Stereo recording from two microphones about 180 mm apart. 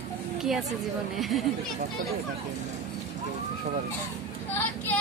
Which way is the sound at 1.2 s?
Centre (ahead or behind).